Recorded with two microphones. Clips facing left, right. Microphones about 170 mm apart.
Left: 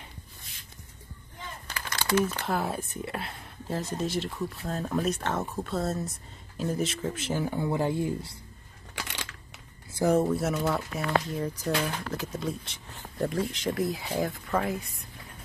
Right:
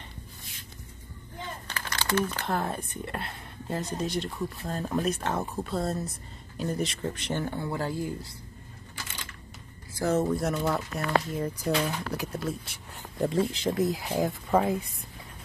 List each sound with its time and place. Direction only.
1.7 s speech: 10° left (ahead or behind)
8.9 s crushing: 75° left (ahead or behind)
9.9 s speech: 15° left (ahead or behind)
10.2 s speech: 5° left (ahead or behind)
13.3 s speech: 30° right (ahead or behind)
14.0 s speech: 15° right (ahead or behind)